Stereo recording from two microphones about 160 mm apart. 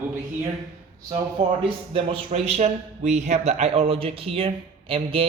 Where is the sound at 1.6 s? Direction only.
35° right (ahead or behind).